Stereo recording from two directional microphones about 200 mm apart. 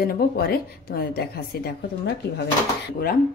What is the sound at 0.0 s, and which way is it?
A woman's voice, 50° left (ahead or behind).